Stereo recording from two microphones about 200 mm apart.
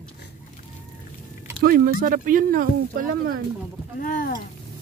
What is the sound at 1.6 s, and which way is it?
Speech, 45° right (ahead or behind).